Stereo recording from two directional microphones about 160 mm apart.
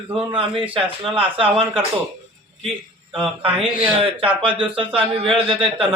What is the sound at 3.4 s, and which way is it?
Speech, 35° right (ahead or behind).